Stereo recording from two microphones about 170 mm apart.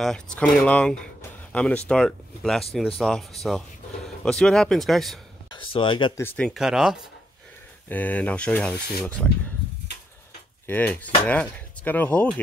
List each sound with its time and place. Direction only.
0.0 s speech: 5° left (ahead or behind)
5.5 s speech: 30° left (ahead or behind)
6.1 s speech: 10° left (ahead or behind)
7.9 s speech: 10° left (ahead or behind)
10.7 s speech: 10° left (ahead or behind)